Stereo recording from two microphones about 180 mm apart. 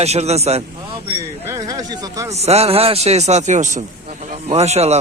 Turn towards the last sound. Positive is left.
turn(degrees=-35)  # may be behind; listen again after turning